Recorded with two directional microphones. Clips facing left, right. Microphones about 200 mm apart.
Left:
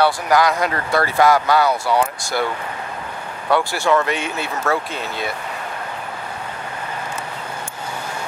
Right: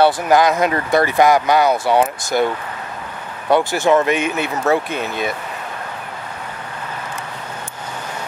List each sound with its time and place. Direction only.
0.0 s speech: 25° right (ahead or behind)
3.4 s speech: 20° right (ahead or behind)